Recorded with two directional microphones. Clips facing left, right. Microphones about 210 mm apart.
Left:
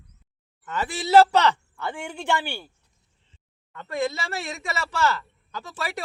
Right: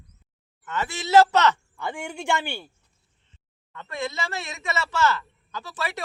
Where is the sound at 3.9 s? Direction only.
35° left (ahead or behind).